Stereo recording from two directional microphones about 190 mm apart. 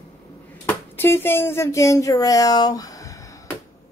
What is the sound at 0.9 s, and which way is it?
A child's voice, 10° left (ahead or behind).